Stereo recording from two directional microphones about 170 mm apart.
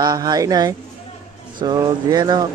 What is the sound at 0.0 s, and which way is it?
Speech, 25° right (ahead or behind).